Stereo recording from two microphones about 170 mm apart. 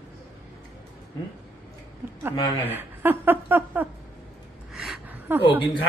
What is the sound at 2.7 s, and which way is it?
Speech, 10° right (ahead or behind).